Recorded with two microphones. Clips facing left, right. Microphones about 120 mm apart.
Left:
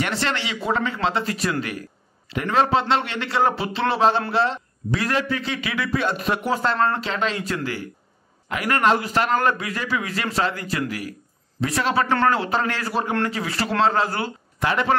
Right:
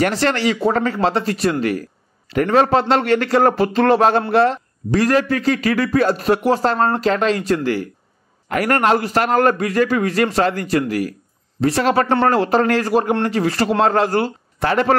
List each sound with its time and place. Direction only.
0.0 s a man's voice: 40° right (ahead or behind)